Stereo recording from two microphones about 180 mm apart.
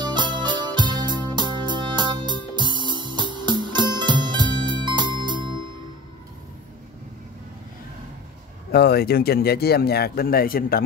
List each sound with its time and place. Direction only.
0.0 s music: 25° right (ahead or behind)
8.7 s speech: 60° left (ahead or behind)